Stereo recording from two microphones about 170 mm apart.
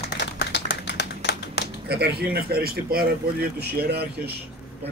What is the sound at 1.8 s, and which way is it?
Speech, 70° right (ahead or behind).